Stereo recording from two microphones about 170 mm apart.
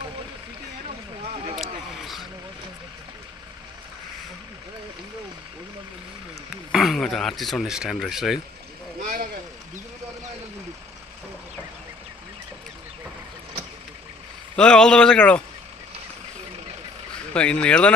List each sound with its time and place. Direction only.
1.6 s a sound: centre (ahead or behind)
6.7 s speech: centre (ahead or behind)
14.5 s speech: 5° left (ahead or behind)
17.3 s speech: 5° left (ahead or behind)